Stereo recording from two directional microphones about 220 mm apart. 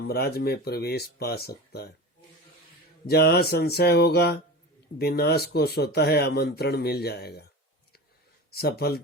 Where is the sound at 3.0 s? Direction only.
45° left (ahead or behind).